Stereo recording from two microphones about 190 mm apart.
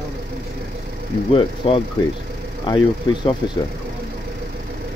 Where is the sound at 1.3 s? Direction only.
30° left (ahead or behind).